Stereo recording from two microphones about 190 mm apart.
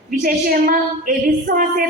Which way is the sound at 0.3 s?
50° right (ahead or behind).